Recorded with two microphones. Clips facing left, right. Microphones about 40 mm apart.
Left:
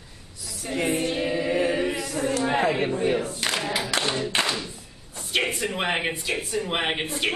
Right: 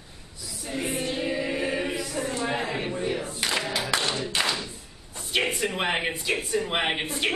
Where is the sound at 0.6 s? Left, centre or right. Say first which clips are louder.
Left 5 dB; left.